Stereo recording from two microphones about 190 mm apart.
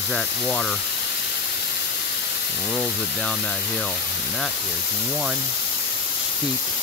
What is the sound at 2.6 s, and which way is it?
Speech, 10° left (ahead or behind).